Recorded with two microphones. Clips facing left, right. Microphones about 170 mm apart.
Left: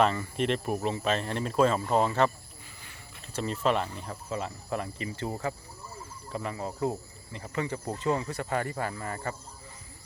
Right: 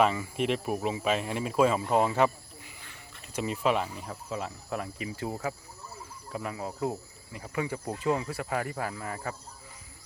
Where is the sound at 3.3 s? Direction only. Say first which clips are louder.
Even; 10° right (ahead or behind).